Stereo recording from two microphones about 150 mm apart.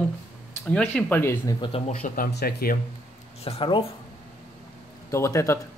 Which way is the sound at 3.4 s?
35° left (ahead or behind).